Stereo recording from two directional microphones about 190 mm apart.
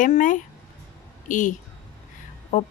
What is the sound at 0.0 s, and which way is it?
A woman's voice, 45° left (ahead or behind).